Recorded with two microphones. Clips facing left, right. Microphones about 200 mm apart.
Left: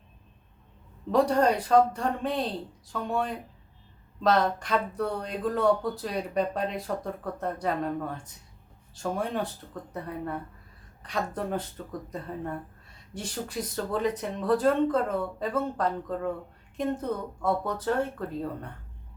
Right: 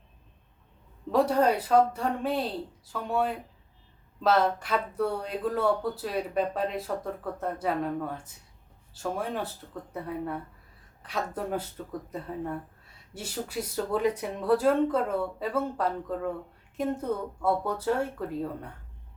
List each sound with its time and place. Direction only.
1.1 s speech: 5° right (ahead or behind)